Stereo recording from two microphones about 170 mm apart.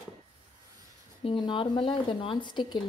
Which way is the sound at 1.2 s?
30° left (ahead or behind).